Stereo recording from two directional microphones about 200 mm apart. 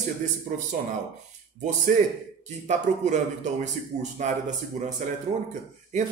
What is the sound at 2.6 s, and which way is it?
A man's voice, 35° right (ahead or behind).